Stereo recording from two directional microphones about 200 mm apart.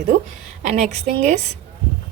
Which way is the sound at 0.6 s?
35° right (ahead or behind).